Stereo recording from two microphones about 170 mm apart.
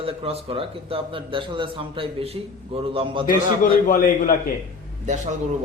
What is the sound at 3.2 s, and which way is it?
A man's voice, 50° left (ahead or behind).